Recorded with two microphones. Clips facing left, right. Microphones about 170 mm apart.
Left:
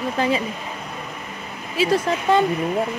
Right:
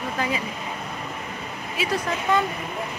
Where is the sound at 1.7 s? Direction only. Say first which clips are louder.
Left 7 dB; 30° left (ahead or behind).